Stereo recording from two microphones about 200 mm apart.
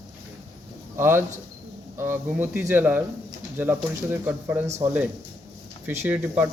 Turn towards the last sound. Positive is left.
turn(degrees=-10)  # may be behind; listen again after turning